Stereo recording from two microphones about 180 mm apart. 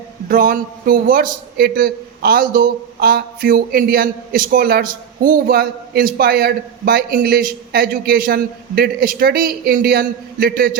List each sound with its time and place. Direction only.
0.3 s a man's voice: 50° right (ahead or behind)